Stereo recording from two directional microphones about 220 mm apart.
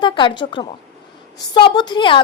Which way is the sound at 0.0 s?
20° left (ahead or behind).